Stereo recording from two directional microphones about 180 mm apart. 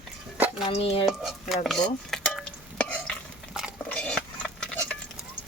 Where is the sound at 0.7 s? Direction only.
35° left (ahead or behind).